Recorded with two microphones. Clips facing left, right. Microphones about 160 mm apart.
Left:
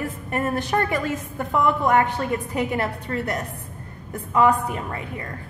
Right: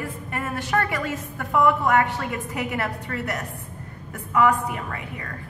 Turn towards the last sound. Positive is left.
turn(degrees=30)  # may be behind; listen again after turning